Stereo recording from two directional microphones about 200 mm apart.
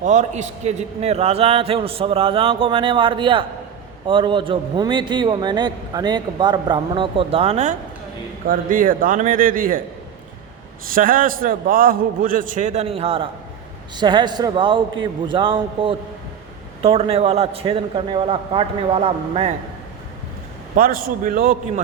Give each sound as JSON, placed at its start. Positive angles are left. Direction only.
{"t": 0.0, "sound": "a man's voice", "side_deg": -40}
{"t": 8.4, "sound": "a man's voice", "side_deg": -45}
{"t": 10.9, "sound": "a man's voice", "side_deg": -45}
{"t": 20.7, "sound": "a man's voice", "side_deg": -45}